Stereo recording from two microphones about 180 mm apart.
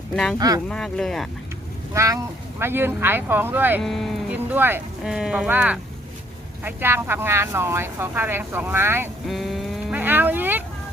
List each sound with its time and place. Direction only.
0.3 s speech: 20° right (ahead or behind)
0.7 s speech: 5° left (ahead or behind)
1.9 s speech: 15° right (ahead or behind)
3.8 s speech: centre (ahead or behind)
9.2 s speech: centre (ahead or behind)